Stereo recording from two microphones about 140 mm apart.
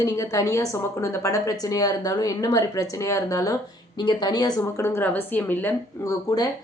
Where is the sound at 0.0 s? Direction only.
25° left (ahead or behind).